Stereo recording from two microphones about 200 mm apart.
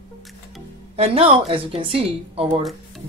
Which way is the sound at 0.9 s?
30° right (ahead or behind).